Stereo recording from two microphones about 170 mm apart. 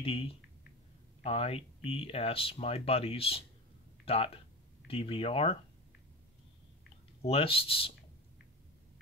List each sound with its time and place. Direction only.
0.0 s speech: 35° left (ahead or behind)
7.2 s speech: 35° left (ahead or behind)